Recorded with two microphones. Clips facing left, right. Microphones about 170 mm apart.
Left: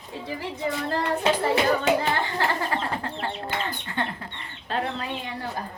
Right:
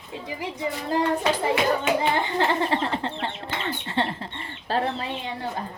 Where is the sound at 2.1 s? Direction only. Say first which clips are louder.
Right 3 dB; 25° right (ahead or behind).